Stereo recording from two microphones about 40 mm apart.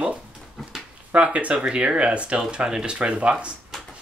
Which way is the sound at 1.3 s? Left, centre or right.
Right.